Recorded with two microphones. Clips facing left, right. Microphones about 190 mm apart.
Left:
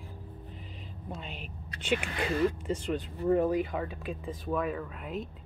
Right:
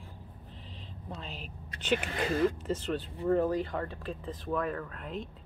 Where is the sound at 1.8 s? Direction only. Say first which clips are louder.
Even; 10° left (ahead or behind).